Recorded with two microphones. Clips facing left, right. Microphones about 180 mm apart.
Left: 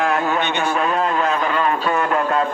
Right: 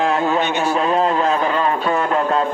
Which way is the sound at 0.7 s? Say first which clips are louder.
Right 4 dB; 30° right (ahead or behind).